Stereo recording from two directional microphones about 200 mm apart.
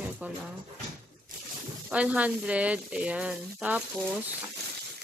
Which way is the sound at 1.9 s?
5° right (ahead or behind).